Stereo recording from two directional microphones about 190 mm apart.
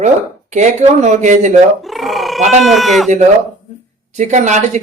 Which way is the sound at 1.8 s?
Centre (ahead or behind).